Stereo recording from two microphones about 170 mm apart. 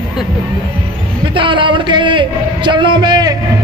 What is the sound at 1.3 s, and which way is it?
A man's voice, 30° right (ahead or behind).